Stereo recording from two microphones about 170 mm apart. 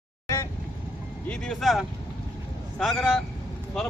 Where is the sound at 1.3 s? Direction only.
5° left (ahead or behind).